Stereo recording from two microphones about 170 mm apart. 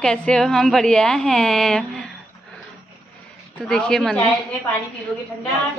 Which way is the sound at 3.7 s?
Centre (ahead or behind).